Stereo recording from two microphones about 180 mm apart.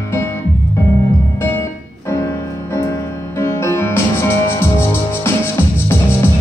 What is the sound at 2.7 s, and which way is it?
Music, 15° left (ahead or behind).